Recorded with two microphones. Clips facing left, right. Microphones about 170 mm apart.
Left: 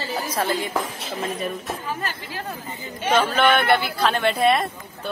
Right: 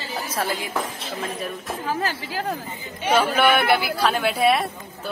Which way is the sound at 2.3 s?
90° right.